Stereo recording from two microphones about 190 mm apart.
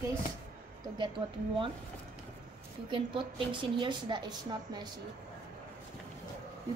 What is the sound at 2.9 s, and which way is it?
A woman's voice, 25° right (ahead or behind).